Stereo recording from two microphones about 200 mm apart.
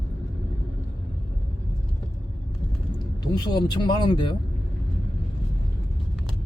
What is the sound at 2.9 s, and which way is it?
Speech, 20° left (ahead or behind).